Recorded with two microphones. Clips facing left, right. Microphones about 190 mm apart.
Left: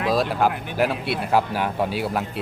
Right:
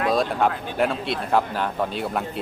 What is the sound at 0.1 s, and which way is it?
Speech, centre (ahead or behind).